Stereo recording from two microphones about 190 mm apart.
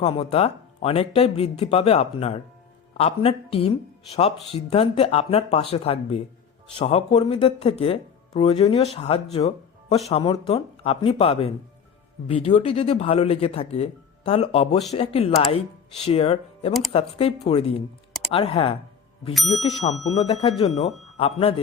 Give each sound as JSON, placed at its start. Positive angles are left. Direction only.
{"t": 0.0, "sound": "speech", "side_deg": 30}
{"t": 19.3, "sound": "speech", "side_deg": 0}
{"t": 19.6, "sound": "speech", "side_deg": 35}